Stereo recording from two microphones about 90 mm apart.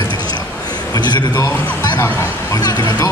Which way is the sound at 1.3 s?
40° left (ahead or behind).